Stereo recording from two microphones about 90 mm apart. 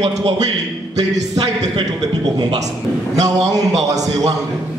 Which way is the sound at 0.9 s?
40° right (ahead or behind).